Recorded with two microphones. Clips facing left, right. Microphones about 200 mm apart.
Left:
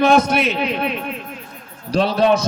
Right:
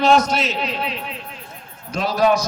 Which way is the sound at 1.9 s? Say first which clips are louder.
Left 2 dB; 30° left (ahead or behind).